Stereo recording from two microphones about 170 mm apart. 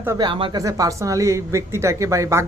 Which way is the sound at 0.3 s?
30° right (ahead or behind).